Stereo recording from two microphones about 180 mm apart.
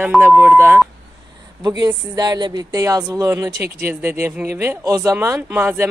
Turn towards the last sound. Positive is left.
turn(degrees=-10)  # may be behind; listen again after turning